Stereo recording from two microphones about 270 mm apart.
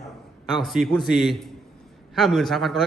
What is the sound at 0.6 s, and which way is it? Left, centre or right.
A man's voice, centre.